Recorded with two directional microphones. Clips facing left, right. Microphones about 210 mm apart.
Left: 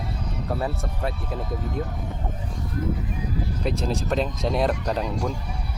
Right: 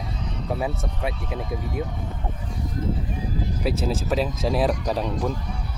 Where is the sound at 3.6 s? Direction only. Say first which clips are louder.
Right 1 dB; 5° right (ahead or behind).